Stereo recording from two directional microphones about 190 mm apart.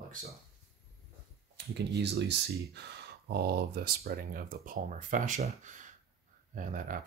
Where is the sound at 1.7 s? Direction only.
60° right (ahead or behind); by 6.9 s 45° right (ahead or behind).